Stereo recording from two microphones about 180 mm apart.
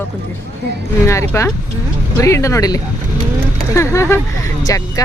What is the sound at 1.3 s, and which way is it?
Speech, 15° left (ahead or behind).